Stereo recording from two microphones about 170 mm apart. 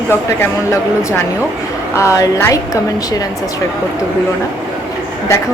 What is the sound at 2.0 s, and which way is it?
Speech, 20° left (ahead or behind).